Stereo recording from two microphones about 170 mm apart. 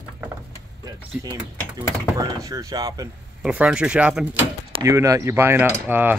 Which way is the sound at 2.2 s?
20° right (ahead or behind).